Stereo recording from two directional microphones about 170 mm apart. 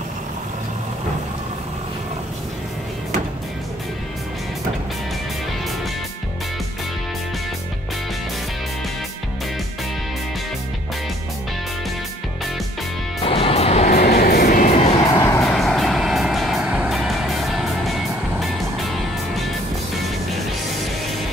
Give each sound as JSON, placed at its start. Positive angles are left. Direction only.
{"t": 13.2, "sound": "music", "side_deg": 35}
{"t": 13.8, "sound": "vehicle", "side_deg": 65}
{"t": 15.0, "sound": "vehicle", "side_deg": 20}
{"t": 15.4, "sound": "vehicle", "side_deg": 0}
{"t": 18.4, "sound": "music", "side_deg": 0}